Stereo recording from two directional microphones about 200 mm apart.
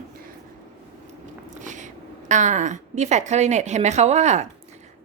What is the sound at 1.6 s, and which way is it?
A woman's voice, 40° right (ahead or behind).